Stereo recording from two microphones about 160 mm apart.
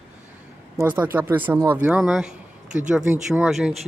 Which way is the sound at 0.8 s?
10° right (ahead or behind).